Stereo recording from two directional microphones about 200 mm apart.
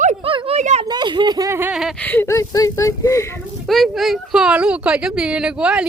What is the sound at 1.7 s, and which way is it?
Speech, centre (ahead or behind).